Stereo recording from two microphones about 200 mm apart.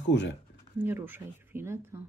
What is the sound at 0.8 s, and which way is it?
Speech, 10° right (ahead or behind).